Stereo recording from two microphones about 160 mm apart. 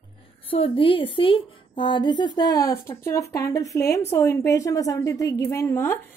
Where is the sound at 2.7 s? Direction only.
15° left (ahead or behind).